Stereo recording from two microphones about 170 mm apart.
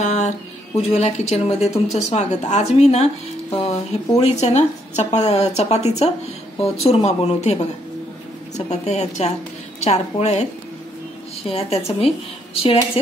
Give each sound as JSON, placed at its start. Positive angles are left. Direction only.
{"t": 0.0, "sound": "a sound", "side_deg": 45}
{"t": 0.9, "sound": "speech", "side_deg": 40}
{"t": 4.2, "sound": "a woman's voice", "side_deg": 40}
{"t": 11.4, "sound": "speech", "side_deg": 35}